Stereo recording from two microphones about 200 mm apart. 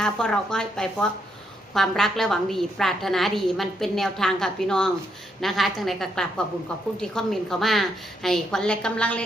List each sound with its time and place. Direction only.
0.0 s a woman's voice: 5° left (ahead or behind)